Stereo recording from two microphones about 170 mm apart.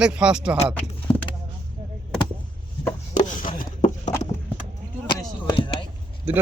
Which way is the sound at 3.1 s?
50° left (ahead or behind).